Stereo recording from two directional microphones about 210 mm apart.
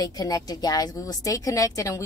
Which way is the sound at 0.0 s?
15° left (ahead or behind).